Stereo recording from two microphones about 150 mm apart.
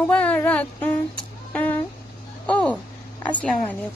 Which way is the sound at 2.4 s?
10° left (ahead or behind).